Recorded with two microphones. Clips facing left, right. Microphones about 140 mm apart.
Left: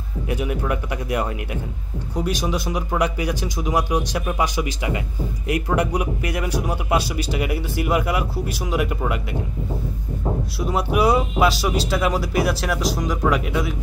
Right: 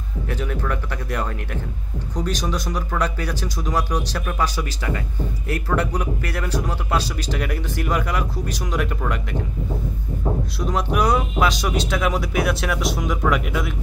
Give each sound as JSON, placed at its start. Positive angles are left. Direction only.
{"t": 0.3, "sound": "speech", "side_deg": 15}
{"t": 10.6, "sound": "speech", "side_deg": 5}